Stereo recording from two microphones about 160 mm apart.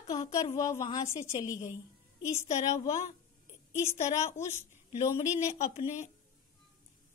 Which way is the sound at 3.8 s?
45° left (ahead or behind).